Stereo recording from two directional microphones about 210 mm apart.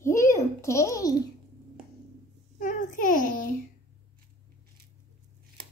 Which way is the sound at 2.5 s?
40° left (ahead or behind).